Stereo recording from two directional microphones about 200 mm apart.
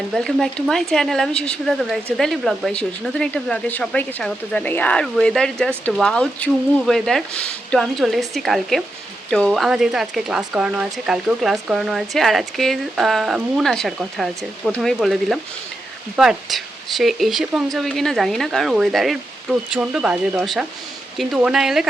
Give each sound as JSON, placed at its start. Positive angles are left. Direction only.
{"t": 0.1, "sound": "speech", "side_deg": 0}